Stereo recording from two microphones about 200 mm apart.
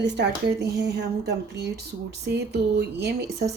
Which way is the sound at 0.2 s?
60° right (ahead or behind).